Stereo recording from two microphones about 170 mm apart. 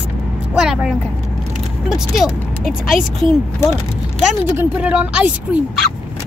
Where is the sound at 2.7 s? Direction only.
55° left (ahead or behind).